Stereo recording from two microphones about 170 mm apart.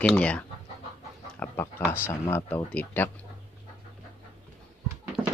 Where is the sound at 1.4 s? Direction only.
10° left (ahead or behind).